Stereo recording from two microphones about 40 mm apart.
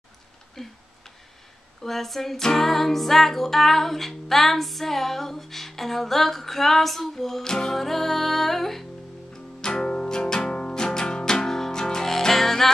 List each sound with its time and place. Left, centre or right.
0.6 s a sound: centre
1.8 s music: centre
9.3 s music: centre